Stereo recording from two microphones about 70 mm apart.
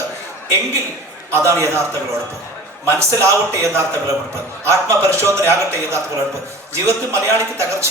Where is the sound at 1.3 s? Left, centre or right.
Right.